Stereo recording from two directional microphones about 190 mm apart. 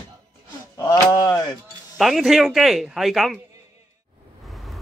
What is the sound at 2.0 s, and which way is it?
Speech, centre (ahead or behind).